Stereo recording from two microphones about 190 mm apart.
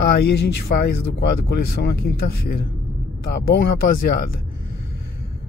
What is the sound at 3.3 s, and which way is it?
Speech, 55° left (ahead or behind).